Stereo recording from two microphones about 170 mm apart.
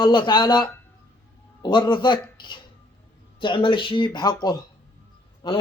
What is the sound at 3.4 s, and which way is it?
Speech, 30° left (ahead or behind).